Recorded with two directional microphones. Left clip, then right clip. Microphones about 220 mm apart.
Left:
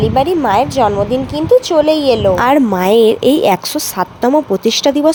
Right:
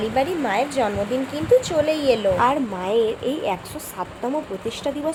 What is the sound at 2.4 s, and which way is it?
A woman's voice, 45° left (ahead or behind).